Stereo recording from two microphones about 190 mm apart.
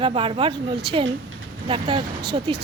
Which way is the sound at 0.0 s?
30° right (ahead or behind).